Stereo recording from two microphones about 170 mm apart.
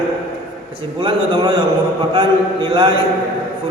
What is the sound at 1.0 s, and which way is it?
A man's voice, 30° right (ahead or behind).